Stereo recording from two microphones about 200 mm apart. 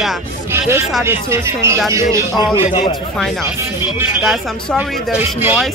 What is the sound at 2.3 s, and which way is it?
Speech, 20° left (ahead or behind).